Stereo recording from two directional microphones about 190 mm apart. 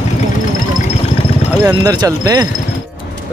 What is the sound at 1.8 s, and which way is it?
Speech, 20° right (ahead or behind).